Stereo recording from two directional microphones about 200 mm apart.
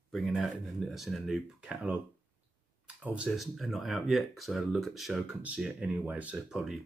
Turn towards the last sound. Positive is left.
turn(degrees=0)  # may be behind; listen again after turning